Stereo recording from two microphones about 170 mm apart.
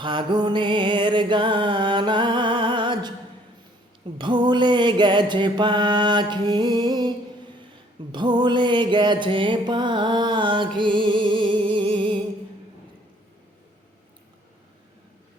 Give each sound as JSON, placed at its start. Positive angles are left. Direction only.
{"t": 0.0, "sound": "music", "side_deg": -30}
{"t": 4.2, "sound": "mantra", "side_deg": -25}
{"t": 8.1, "sound": "music", "side_deg": -25}